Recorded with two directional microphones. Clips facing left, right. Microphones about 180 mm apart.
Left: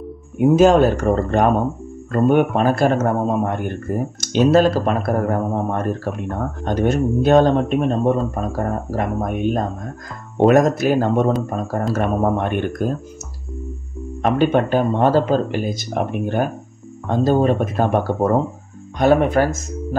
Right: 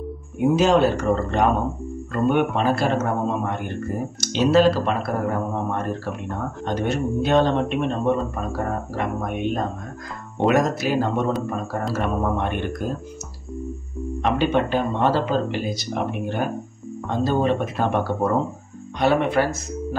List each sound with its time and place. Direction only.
0.4 s speech: 45° left (ahead or behind)
14.2 s speech: 50° left (ahead or behind)